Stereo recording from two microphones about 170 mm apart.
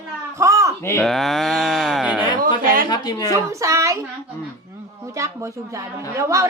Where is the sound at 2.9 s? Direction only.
25° left (ahead or behind).